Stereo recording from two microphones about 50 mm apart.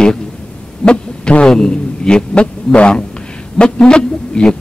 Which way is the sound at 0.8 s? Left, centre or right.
Left.